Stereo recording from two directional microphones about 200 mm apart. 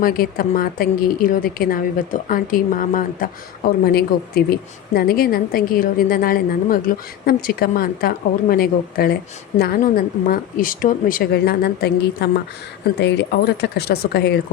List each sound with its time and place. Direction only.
0.0 s a woman's voice: 45° left (ahead or behind)